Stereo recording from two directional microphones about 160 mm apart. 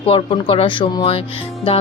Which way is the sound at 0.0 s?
35° left (ahead or behind).